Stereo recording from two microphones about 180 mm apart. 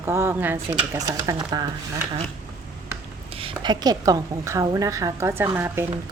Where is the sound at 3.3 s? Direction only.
30° right (ahead or behind); by 5.8 s 10° right (ahead or behind).